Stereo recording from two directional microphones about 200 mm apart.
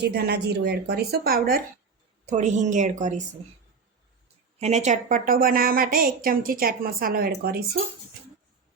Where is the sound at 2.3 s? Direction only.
35° right (ahead or behind).